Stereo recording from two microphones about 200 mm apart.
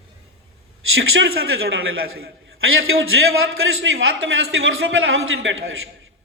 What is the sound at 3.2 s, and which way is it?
Speech, 70° right (ahead or behind).